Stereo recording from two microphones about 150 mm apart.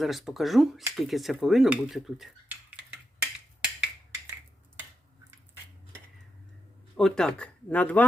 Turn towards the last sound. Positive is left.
turn(degrees=10)  # may be behind; listen again after turning